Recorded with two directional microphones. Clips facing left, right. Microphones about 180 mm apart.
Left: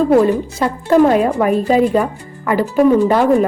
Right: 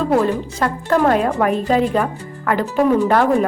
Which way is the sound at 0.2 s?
10° left (ahead or behind).